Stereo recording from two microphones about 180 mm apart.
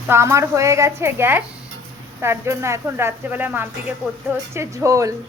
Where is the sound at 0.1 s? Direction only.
15° right (ahead or behind).